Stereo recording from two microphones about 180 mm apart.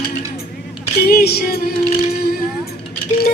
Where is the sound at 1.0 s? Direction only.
60° left (ahead or behind).